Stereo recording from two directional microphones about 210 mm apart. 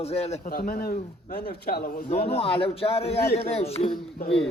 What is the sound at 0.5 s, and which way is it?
Speech, 45° left (ahead or behind).